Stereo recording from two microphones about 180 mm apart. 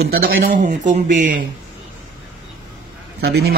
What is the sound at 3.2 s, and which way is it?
Speech, 60° right (ahead or behind).